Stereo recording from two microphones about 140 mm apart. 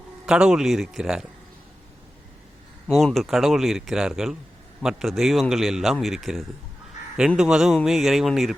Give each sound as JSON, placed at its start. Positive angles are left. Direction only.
{"t": 0.3, "sound": "speech", "side_deg": -5}
{"t": 2.8, "sound": "speech", "side_deg": 0}